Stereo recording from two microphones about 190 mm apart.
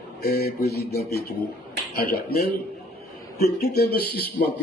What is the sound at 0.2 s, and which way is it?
Speech, 55° left (ahead or behind).